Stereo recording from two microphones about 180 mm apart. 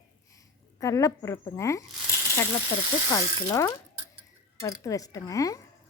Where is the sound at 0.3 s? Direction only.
15° left (ahead or behind).